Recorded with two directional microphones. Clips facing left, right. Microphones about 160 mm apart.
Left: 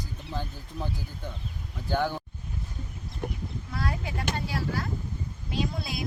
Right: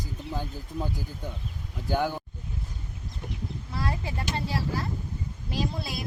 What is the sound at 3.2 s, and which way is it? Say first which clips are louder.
Speech: left 5 dB; 60° left (ahead or behind).